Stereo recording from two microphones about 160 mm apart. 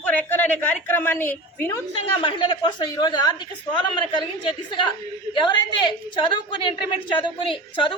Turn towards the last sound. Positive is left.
turn(degrees=30)  # may be behind; listen again after turning